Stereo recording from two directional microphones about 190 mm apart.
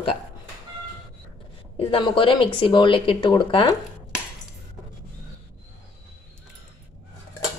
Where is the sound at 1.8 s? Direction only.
25° left (ahead or behind).